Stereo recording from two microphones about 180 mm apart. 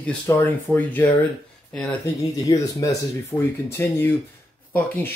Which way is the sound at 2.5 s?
20° left (ahead or behind).